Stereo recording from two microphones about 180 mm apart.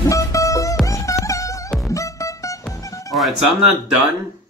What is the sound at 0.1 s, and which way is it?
Music, 20° left (ahead or behind).